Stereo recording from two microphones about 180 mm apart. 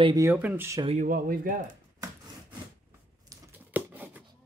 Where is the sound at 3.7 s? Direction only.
10° right (ahead or behind).